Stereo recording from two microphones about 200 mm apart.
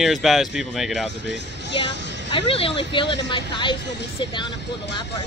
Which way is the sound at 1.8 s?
25° left (ahead or behind).